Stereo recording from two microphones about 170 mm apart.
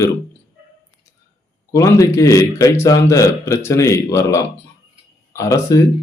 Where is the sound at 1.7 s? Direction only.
20° left (ahead or behind).